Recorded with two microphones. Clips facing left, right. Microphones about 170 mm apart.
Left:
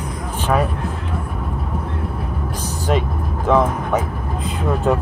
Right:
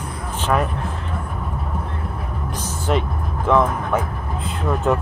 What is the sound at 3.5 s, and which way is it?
Vehicle, 20° left (ahead or behind).